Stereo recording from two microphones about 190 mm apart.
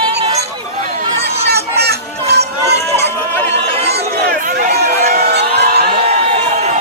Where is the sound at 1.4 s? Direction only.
60° right (ahead or behind).